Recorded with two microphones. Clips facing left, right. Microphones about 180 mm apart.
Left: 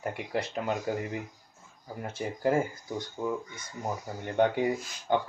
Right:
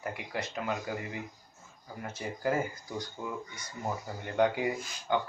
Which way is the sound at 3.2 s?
20° left (ahead or behind).